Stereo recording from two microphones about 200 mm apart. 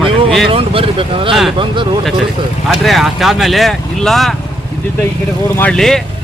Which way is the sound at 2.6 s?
Centre (ahead or behind).